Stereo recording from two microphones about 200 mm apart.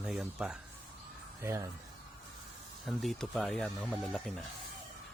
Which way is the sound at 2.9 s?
Centre (ahead or behind).